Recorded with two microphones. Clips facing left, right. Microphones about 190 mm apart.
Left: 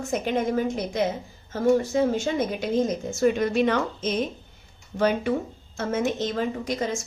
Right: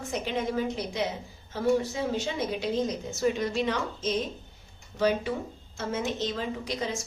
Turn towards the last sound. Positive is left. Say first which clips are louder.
# left 5 dB
turn(degrees=45)  # may be behind; listen again after turning